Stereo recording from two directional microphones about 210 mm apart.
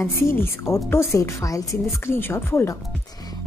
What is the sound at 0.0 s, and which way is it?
A woman's voice, 10° left (ahead or behind).